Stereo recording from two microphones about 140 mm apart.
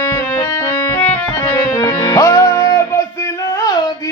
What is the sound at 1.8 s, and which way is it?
Music, 30° left (ahead or behind).